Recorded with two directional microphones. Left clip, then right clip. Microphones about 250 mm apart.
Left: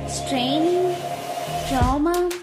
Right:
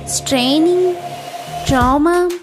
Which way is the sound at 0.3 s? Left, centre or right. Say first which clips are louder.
Right 8 dB; right.